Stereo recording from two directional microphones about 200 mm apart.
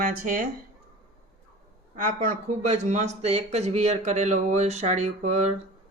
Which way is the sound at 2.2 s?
35° right (ahead or behind).